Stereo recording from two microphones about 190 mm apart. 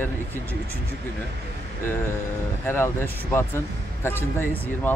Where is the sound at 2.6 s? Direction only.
10° left (ahead or behind).